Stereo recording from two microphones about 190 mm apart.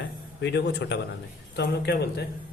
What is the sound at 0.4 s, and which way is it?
Speech, 65° left (ahead or behind).